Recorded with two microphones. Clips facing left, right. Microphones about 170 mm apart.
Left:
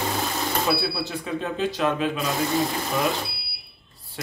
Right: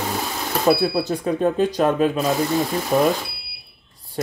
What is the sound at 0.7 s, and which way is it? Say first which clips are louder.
Speech: right 7 dB; 45° right (ahead or behind).